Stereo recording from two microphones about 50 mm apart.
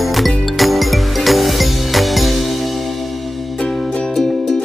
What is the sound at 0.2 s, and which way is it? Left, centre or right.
Music, centre.